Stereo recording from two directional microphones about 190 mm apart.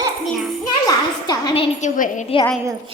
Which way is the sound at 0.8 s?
20° left (ahead or behind).